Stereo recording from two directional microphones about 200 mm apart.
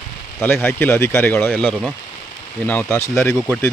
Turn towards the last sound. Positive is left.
turn(degrees=10)  # may be behind; listen again after turning